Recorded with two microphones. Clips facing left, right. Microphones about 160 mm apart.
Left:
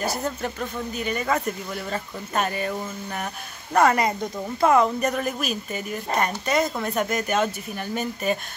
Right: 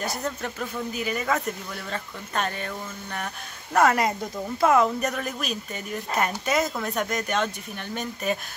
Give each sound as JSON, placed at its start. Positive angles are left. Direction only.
{"t": 0.0, "sound": "a woman's voice", "side_deg": 5}